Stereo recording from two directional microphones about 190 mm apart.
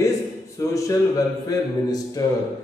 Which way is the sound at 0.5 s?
15° left (ahead or behind).